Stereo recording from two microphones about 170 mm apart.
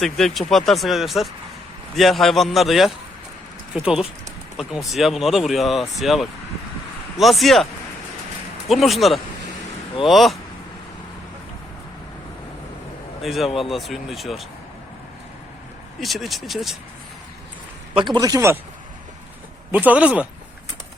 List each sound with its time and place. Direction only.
0.0 s speech: centre (ahead or behind)
8.7 s speech: centre (ahead or behind)
13.2 s speech: centre (ahead or behind)
16.0 s speech: centre (ahead or behind)
17.9 s a man's voice: 25° right (ahead or behind)
19.7 s speech: 10° right (ahead or behind)